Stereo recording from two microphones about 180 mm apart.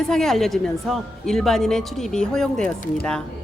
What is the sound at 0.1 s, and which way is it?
A woman's voice, centre (ahead or behind).